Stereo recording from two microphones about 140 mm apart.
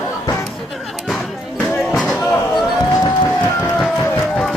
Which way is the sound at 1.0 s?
Centre (ahead or behind).